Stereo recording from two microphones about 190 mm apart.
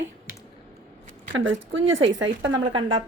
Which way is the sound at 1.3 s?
90° right.